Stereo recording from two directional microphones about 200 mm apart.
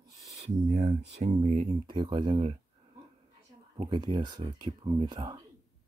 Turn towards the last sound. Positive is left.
turn(degrees=-20)  # may be behind; listen again after turning